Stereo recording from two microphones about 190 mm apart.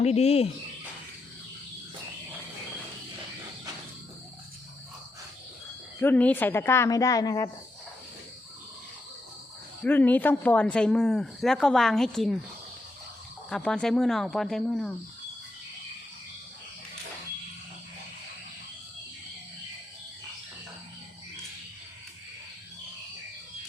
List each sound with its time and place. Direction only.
0.0 s speech: 35° left (ahead or behind)
6.0 s speech: 10° left (ahead or behind)
9.8 s speech: 10° left (ahead or behind)
13.5 s speech: 5° left (ahead or behind)